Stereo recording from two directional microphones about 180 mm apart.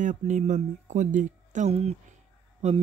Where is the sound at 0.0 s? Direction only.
45° right (ahead or behind).